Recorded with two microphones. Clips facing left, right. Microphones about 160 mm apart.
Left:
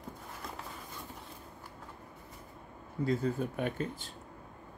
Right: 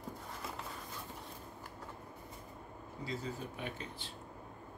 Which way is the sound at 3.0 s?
55° left (ahead or behind).